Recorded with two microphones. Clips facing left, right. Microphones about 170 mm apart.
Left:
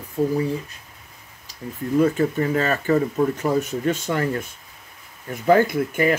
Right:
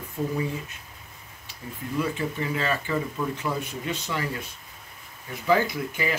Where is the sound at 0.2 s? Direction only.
35° left (ahead or behind).